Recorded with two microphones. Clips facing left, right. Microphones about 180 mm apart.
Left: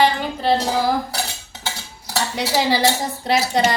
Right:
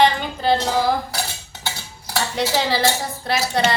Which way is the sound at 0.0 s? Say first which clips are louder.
Even; 5° left (ahead or behind).